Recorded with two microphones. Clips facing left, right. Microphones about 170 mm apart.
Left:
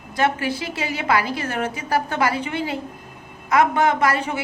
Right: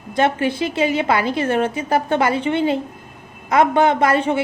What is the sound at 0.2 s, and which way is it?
A woman's voice, 25° right (ahead or behind).